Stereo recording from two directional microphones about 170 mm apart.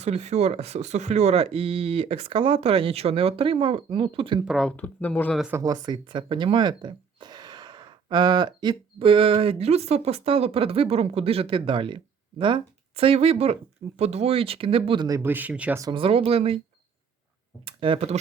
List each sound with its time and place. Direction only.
0.0 s speech: 40° right (ahead or behind)
4.4 s speech: centre (ahead or behind)
5.4 s speech: 15° right (ahead or behind)
15.8 s speech: 30° right (ahead or behind)
17.7 s speech: 30° right (ahead or behind)